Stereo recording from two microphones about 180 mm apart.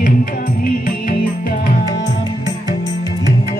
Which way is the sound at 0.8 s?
45° left (ahead or behind).